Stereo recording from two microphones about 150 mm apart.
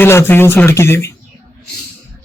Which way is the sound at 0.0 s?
15° left (ahead or behind).